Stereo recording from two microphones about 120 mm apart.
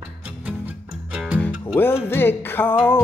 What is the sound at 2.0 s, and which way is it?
Music, 20° left (ahead or behind).